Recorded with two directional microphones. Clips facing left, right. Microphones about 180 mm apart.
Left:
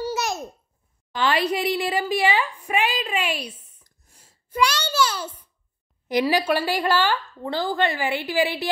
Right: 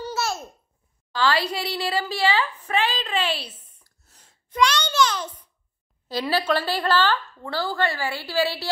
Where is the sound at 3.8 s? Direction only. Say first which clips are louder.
Left 1 dB; 15° left (ahead or behind).